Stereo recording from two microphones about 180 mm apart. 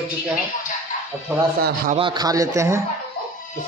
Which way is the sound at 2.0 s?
25° right (ahead or behind).